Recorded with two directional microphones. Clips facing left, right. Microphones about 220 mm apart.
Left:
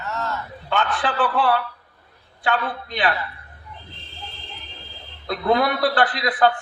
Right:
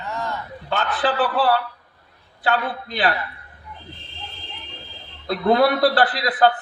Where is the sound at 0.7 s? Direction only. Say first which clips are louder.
Right 1 dB; 40° right (ahead or behind).